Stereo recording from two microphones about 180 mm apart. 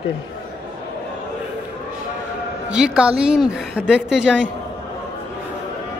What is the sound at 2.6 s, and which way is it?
Speech, 5° right (ahead or behind).